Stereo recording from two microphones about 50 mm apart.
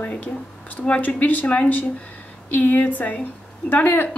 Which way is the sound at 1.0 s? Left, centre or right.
Left.